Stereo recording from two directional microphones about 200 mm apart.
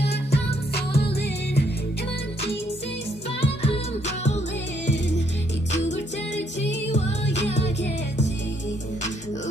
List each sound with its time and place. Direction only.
0.0 s music: 55° left (ahead or behind)
3.3 s music: 30° left (ahead or behind)
7.3 s music: 35° left (ahead or behind)